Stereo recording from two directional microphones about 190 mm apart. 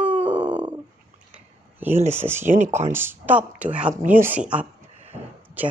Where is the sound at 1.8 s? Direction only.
10° right (ahead or behind).